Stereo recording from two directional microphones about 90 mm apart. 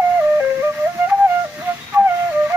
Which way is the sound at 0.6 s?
25° right (ahead or behind).